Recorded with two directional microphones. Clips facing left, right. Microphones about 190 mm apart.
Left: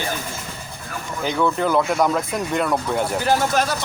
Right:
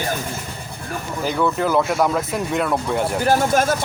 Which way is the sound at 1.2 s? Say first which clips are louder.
Even; 5° right (ahead or behind).